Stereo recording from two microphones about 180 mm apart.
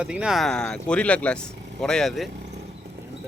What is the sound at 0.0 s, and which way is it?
Speech, 5° right (ahead or behind).